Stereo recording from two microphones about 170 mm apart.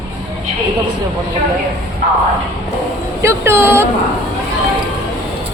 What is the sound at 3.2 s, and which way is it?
Speech, 15° right (ahead or behind).